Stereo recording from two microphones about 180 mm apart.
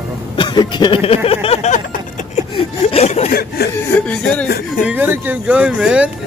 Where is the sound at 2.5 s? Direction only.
35° left (ahead or behind).